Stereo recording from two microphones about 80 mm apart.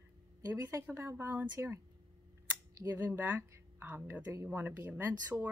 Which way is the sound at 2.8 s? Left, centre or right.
Right.